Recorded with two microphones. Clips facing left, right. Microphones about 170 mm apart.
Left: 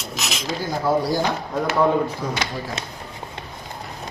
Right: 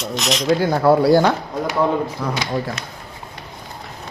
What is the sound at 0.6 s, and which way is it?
A man's voice, 65° right (ahead or behind).